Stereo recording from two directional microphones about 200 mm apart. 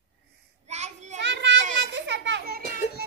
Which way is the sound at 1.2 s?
65° right (ahead or behind).